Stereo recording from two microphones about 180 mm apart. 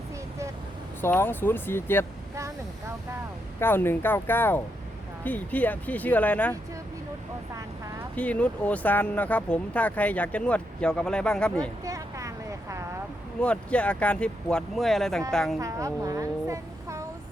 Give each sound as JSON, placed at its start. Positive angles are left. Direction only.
{"t": 1.0, "sound": "speech", "side_deg": 10}
{"t": 3.6, "sound": "speech", "side_deg": 10}
{"t": 8.1, "sound": "speech", "side_deg": 5}
{"t": 11.9, "sound": "a sound", "side_deg": -15}
{"t": 13.4, "sound": "a woman's voice", "side_deg": 5}
{"t": 15.5, "sound": "a child's voice", "side_deg": -15}